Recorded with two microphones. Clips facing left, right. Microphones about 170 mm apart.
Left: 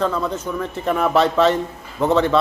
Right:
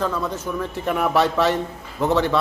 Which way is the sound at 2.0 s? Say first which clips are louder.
Left 3 dB; 20° left (ahead or behind).